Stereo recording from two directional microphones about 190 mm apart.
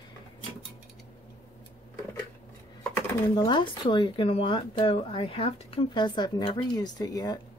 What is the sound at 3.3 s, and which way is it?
Speech, 25° left (ahead or behind).